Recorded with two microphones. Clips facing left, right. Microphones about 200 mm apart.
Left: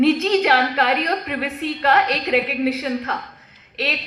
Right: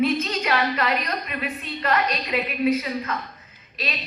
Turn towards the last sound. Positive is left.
turn(degrees=75)  # may be behind; listen again after turning